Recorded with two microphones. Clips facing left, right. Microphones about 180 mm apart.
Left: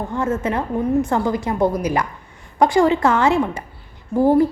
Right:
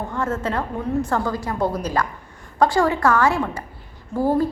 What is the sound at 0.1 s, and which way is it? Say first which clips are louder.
A woman's voice: left 4 dB; 15° left (ahead or behind).